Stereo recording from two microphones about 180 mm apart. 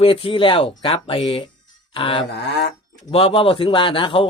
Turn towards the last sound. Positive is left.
turn(degrees=30)  # may be behind; listen again after turning